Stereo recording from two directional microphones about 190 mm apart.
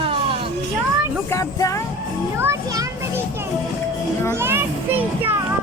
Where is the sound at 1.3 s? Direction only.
15° left (ahead or behind).